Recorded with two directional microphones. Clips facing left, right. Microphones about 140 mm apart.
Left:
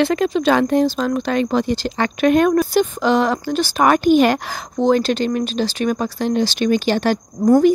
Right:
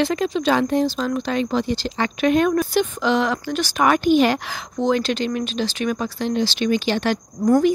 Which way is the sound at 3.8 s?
45° left (ahead or behind).